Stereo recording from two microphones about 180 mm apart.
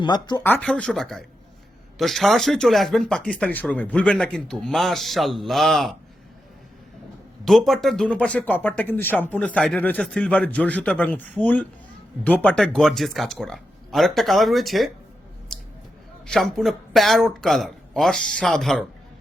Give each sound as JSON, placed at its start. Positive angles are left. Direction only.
{"t": 0.0, "sound": "speech", "side_deg": 25}
{"t": 0.4, "sound": "speech", "side_deg": 10}
{"t": 7.4, "sound": "speech", "side_deg": 0}
{"t": 15.5, "sound": "a sound", "side_deg": 5}
{"t": 16.2, "sound": "speech", "side_deg": 0}